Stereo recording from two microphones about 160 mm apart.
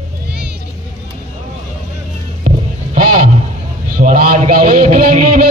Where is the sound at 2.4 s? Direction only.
55° right (ahead or behind).